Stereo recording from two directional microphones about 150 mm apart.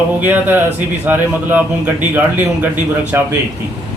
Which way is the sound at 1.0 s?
10° right (ahead or behind).